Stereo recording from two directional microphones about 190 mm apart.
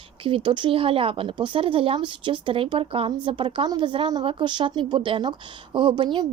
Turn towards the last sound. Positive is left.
turn(degrees=-25)  # may be behind; listen again after turning